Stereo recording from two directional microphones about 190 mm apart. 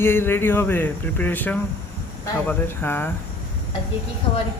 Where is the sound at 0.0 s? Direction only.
10° left (ahead or behind).